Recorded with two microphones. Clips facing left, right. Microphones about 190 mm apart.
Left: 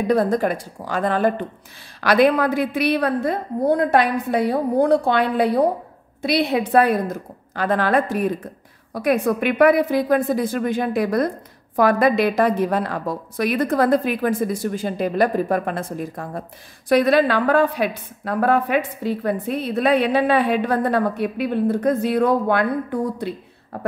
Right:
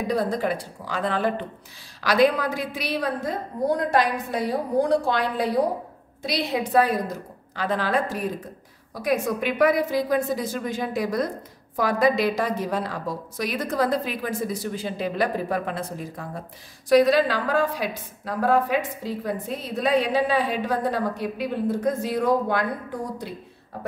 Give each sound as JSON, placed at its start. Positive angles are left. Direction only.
{"t": 0.1, "sound": "a woman's voice", "side_deg": 50}